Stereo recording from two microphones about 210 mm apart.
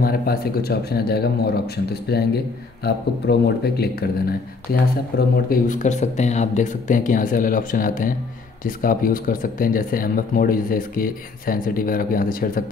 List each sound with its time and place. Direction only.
0.0 s speech: 45° left (ahead or behind)